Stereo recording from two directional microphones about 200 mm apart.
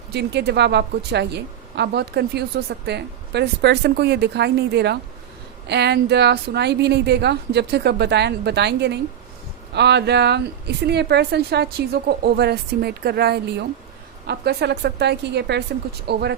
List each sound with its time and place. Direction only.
0.1 s a woman's voice: 55° right (ahead or behind)